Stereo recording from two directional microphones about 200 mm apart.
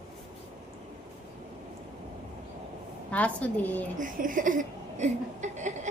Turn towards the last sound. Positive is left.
turn(degrees=-35)  # may be behind; listen again after turning